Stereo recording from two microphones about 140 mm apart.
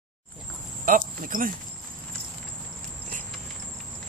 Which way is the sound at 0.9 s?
75° right (ahead or behind).